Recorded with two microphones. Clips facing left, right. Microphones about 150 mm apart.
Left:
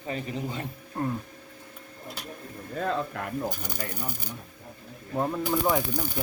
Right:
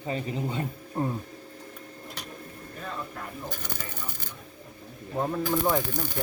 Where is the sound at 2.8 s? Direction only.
90° left.